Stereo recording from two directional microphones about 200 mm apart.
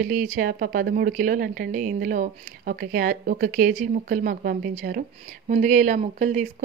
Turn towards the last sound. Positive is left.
turn(degrees=-35)  # may be behind; listen again after turning